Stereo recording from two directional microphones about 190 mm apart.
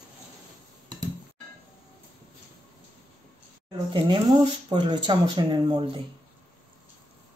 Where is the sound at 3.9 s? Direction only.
25° right (ahead or behind).